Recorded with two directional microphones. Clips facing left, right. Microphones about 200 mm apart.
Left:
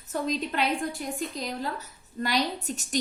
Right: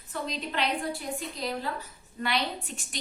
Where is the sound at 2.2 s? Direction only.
40° left (ahead or behind).